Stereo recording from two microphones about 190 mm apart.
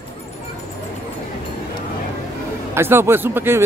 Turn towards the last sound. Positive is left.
turn(degrees=-10)  # may be behind; listen again after turning